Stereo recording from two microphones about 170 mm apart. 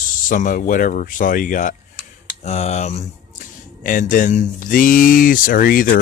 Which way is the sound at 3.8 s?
50° left (ahead or behind).